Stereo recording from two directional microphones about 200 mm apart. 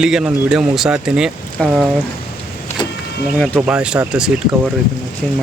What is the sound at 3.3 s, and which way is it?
Speech, 5° left (ahead or behind).